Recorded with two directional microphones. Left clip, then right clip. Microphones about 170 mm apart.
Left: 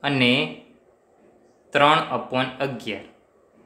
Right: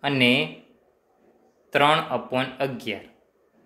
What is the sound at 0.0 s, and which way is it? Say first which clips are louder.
Speech: even; 20° right (ahead or behind).